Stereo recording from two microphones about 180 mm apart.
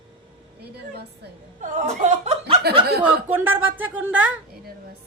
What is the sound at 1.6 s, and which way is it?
Speech, 45° right (ahead or behind).